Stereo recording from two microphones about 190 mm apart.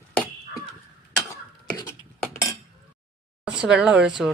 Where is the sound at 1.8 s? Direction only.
15° left (ahead or behind).